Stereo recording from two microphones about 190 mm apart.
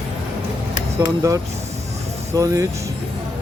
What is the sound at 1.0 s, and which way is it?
Speech, 15° right (ahead or behind).